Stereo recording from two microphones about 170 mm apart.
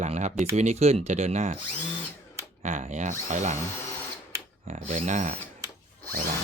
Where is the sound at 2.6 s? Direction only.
45° right (ahead or behind).